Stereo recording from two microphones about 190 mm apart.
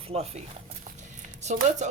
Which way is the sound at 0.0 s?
30° right (ahead or behind).